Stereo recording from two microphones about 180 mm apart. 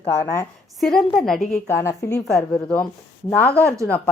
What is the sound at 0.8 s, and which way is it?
Speech, 5° left (ahead or behind).